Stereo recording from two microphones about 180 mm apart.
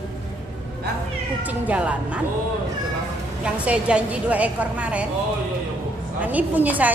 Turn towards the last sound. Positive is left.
turn(degrees=-10)  # may be behind; listen again after turning